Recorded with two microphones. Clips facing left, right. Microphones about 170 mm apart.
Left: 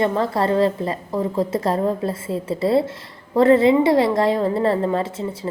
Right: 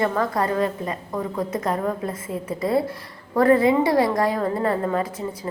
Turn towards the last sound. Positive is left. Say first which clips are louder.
# left 2 dB
turn(degrees=25)  # may be behind; listen again after turning